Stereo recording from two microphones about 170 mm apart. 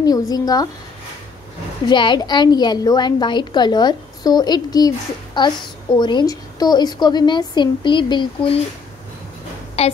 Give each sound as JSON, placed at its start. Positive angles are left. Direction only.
{"t": 0.0, "sound": "a woman's voice", "side_deg": 20}
{"t": 1.9, "sound": "a woman's voice", "side_deg": 25}
{"t": 9.8, "sound": "a woman's voice", "side_deg": 35}